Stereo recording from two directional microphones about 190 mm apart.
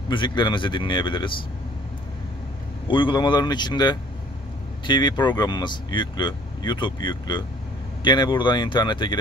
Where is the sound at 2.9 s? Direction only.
25° left (ahead or behind).